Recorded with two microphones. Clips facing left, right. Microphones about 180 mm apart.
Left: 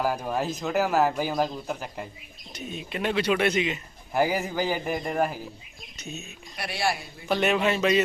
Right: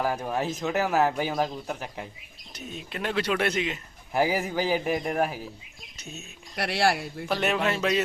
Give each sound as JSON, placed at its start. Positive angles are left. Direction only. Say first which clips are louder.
{"t": 0.0, "sound": "speech", "louder": "left 1 dB", "side_deg": 0}
{"t": 6.6, "sound": "speech", "louder": "right 4 dB", "side_deg": -75}
{"t": 7.3, "sound": "speech", "louder": "left 3 dB", "side_deg": 0}